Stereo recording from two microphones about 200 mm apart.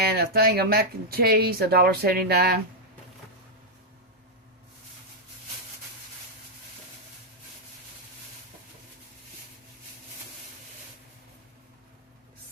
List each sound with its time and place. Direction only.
0.0 s speech: 50° right (ahead or behind)